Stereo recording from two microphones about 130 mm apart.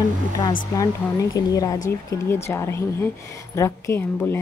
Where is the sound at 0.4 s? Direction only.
30° left (ahead or behind).